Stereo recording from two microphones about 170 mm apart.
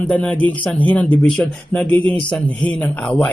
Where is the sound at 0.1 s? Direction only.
10° left (ahead or behind).